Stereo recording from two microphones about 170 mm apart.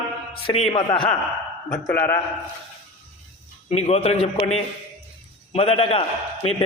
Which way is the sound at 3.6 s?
35° left (ahead or behind).